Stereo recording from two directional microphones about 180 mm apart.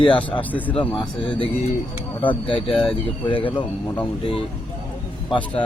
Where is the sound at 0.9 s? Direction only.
25° left (ahead or behind).